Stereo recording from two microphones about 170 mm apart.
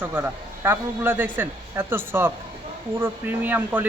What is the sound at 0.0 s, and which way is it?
A man's voice, 10° right (ahead or behind).